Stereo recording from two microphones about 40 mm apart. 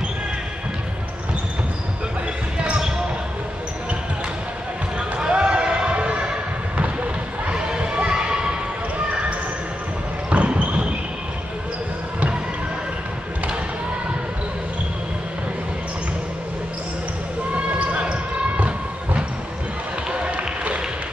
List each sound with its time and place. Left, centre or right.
5.3 s basketball bounce: right
6.8 s run: right
7.5 s children shouting: right
10.3 s basketball bounce: right
17.6 s basketball bounce: right
20.1 s run: right